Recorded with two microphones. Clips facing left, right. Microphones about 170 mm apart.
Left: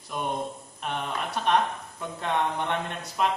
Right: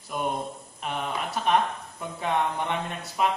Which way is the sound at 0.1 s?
5° right (ahead or behind).